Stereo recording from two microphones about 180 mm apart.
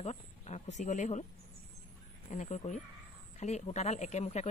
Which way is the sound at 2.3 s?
40° left (ahead or behind).